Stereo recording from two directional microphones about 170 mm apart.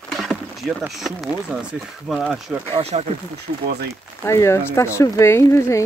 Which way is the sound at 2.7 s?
40° right (ahead or behind).